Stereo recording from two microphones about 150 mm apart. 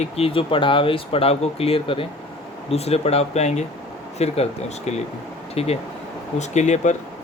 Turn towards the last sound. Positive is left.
turn(degrees=50)  # may be behind; listen again after turning